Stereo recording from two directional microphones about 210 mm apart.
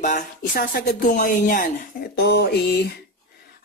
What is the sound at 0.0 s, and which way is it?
Speech, 35° left (ahead or behind).